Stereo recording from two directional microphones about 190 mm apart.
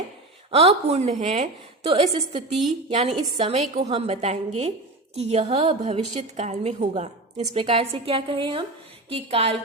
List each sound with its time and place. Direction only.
0.5 s a woman's voice: 35° right (ahead or behind)